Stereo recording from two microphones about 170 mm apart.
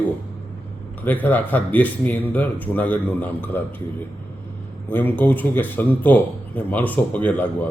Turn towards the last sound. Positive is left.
turn(degrees=10)  # may be behind; listen again after turning